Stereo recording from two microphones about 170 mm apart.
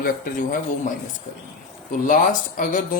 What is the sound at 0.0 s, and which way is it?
Speech, 50° left (ahead or behind).